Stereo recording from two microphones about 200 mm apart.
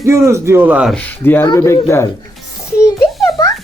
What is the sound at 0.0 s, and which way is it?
Speech, 15° right (ahead or behind).